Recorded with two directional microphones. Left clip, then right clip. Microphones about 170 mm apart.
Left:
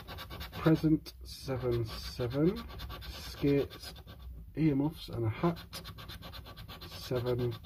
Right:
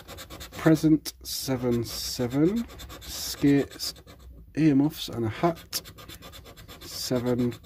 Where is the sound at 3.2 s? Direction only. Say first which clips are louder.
Right 7 dB; 50° right (ahead or behind).